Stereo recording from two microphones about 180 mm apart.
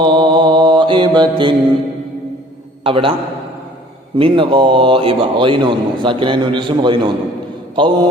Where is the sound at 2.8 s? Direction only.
30° right (ahead or behind).